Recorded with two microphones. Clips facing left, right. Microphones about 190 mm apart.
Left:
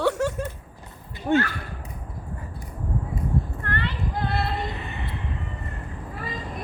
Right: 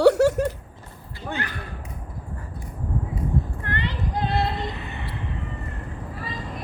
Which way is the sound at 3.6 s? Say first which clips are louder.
Even; 20° right (ahead or behind).